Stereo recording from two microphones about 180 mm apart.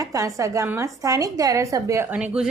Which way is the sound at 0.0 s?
20° right (ahead or behind).